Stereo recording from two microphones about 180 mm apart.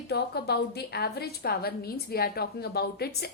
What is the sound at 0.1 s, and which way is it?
A woman's voice, 65° left (ahead or behind).